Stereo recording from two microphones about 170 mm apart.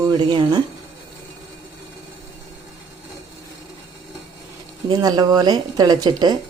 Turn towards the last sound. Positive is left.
turn(degrees=-25)  # may be behind; listen again after turning